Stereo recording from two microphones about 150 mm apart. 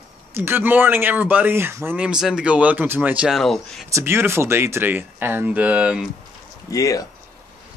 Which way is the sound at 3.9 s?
15° right (ahead or behind).